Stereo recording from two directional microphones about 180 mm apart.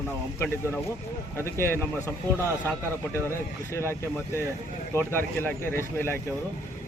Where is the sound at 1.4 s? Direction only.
15° left (ahead or behind).